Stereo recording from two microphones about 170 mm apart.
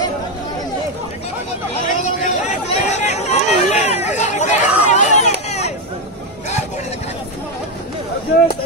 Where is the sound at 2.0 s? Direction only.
45° left (ahead or behind).